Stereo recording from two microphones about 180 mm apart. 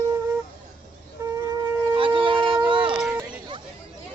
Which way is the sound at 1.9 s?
30° right (ahead or behind).